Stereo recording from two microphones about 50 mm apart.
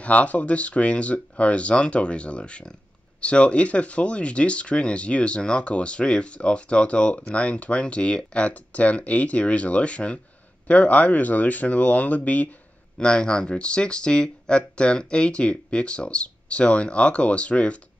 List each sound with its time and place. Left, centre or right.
0.0 s speech: left
12.9 s speech: centre